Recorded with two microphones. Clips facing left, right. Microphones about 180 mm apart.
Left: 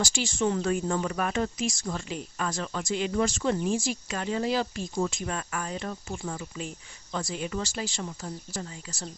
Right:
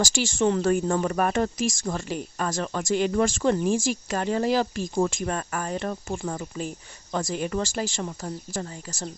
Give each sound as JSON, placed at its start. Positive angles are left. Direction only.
{"t": 0.2, "sound": "speech", "side_deg": -55}
{"t": 0.6, "sound": "speech", "side_deg": -45}
{"t": 3.8, "sound": "speech", "side_deg": -45}